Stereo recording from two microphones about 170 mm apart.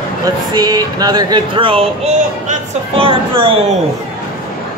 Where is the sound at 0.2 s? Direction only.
25° right (ahead or behind).